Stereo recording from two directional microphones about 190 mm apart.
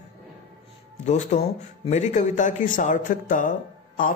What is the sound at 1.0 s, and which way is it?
A man's voice, 35° left (ahead or behind).